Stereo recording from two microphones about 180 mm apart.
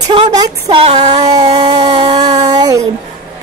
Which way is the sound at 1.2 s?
20° right (ahead or behind).